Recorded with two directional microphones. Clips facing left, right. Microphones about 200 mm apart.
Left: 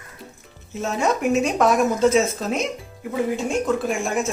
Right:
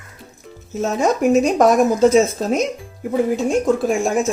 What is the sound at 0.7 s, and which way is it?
Speech, 40° right (ahead or behind).